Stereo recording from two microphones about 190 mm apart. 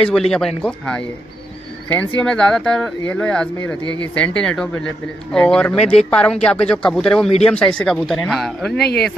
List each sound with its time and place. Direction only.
0.0 s speech: 5° left (ahead or behind)
2.1 s speech: 5° left (ahead or behind)
8.7 s speech: 60° left (ahead or behind)